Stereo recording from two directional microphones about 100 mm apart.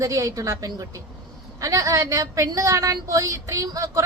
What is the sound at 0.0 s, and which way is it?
A woman's voice, 35° right (ahead or behind).